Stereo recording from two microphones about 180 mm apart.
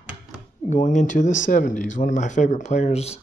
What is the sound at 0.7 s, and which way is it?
Speech, 45° left (ahead or behind).